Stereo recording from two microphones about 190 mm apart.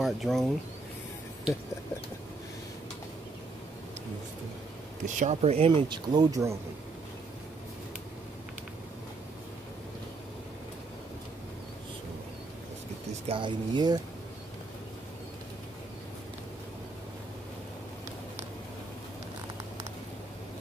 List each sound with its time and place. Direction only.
0.0 s speech: centre (ahead or behind)
5.0 s speech: 40° right (ahead or behind); by 6.6 s 15° right (ahead or behind)
13.3 s speech: 25° right (ahead or behind)